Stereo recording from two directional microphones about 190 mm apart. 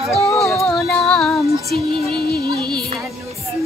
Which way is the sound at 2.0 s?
25° right (ahead or behind).